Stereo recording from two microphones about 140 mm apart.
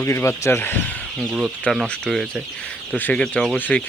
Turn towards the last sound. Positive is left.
turn(degrees=10)  # may be behind; listen again after turning